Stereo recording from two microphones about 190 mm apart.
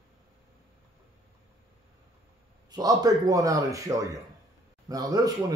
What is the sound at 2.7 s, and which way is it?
Speech, 20° right (ahead or behind).